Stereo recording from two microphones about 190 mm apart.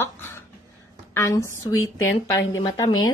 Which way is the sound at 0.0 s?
10° left (ahead or behind).